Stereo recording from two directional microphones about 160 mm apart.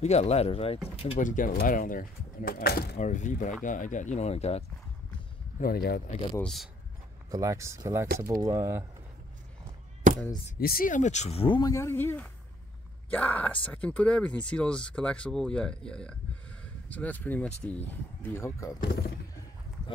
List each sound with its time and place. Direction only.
0.0 s speech: 45° left (ahead or behind)
1.2 s speech: 55° left (ahead or behind); by 3.0 s 85° left
3.0 s speech: 50° left (ahead or behind)
5.6 s speech: 70° left (ahead or behind)
6.4 s speech: centre (ahead or behind)
7.2 s speech: 20° right (ahead or behind)
10.6 s speech: 65° left (ahead or behind); by 11.6 s 35° left (ahead or behind)
11.6 s speech: 20° left (ahead or behind)
18.8 s speech: 70° left (ahead or behind)